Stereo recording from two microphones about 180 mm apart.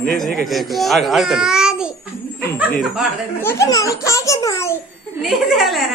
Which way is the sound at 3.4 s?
15° left (ahead or behind).